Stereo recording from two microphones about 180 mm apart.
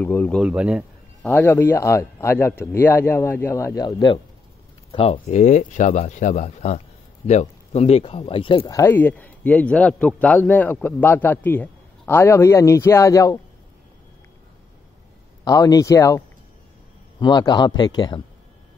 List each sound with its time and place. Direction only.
0.0 s a man's voice: 10° left (ahead or behind)
0.4 s speech: 5° right (ahead or behind)
1.2 s a man's voice: 10° left (ahead or behind); by 8.7 s 30° left (ahead or behind)
8.7 s a man's voice: 10° left (ahead or behind)
15.4 s speech: 20° left (ahead or behind)